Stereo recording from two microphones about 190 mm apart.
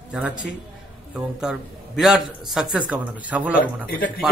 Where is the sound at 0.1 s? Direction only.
5° right (ahead or behind).